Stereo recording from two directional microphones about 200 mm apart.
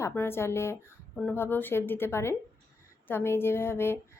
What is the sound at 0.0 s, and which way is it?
A woman's voice, 10° left (ahead or behind).